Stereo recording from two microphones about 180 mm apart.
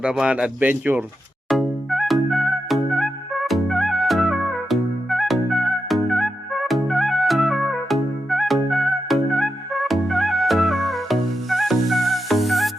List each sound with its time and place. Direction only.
0.0 s speech: 5° right (ahead or behind)
1.5 s music: centre (ahead or behind)